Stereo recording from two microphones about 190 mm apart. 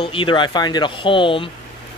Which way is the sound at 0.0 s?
25° left (ahead or behind).